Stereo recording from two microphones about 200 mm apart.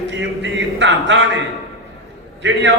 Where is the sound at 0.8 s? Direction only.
60° right (ahead or behind).